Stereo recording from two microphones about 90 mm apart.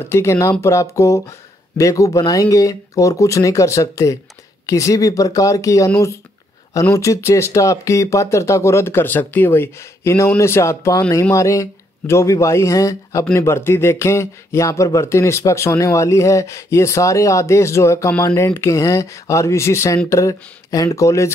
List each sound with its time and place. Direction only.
0.1 s speech: 30° left (ahead or behind)
6.9 s speech: 30° left (ahead or behind)